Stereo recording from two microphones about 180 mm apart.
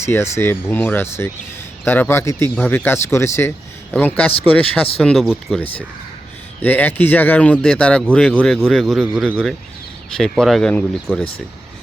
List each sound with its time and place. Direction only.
0.0 s a man's voice: 15° left (ahead or behind)
11.1 s a man's voice: 5° right (ahead or behind)